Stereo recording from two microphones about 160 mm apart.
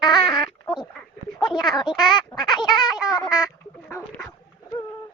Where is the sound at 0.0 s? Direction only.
25° left (ahead or behind).